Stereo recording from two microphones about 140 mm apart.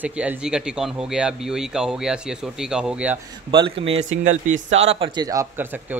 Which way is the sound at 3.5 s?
40° right (ahead or behind).